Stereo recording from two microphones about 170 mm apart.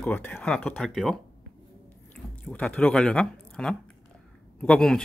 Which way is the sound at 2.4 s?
5° left (ahead or behind).